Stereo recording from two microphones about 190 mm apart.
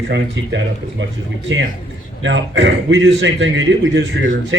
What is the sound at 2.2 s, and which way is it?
A man's voice, 75° right (ahead or behind).